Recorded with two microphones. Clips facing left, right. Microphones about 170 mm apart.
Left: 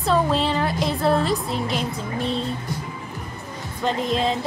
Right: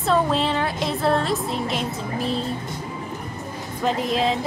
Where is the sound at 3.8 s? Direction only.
Centre (ahead or behind).